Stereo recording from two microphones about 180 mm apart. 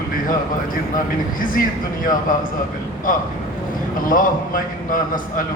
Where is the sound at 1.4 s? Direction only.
50° left (ahead or behind).